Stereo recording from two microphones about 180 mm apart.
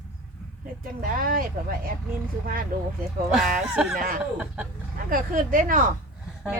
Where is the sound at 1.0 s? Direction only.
50° right (ahead or behind).